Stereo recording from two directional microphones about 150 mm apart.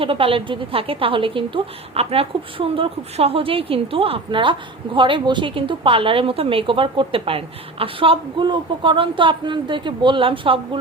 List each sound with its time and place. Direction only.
0.0 s a woman's voice: 35° right (ahead or behind)